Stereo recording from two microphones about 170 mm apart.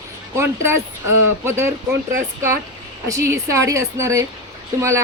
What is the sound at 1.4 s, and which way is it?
A woman's voice, 15° right (ahead or behind).